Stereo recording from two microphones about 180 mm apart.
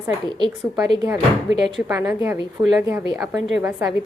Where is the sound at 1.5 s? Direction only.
90° right.